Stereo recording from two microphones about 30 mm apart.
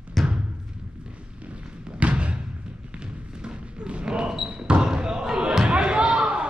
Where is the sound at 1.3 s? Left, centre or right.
Right.